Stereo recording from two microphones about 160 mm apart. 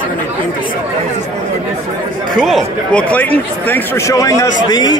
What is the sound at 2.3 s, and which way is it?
A man's voice, centre (ahead or behind).